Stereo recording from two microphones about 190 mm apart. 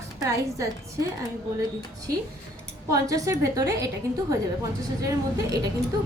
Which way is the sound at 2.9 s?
15° right (ahead or behind).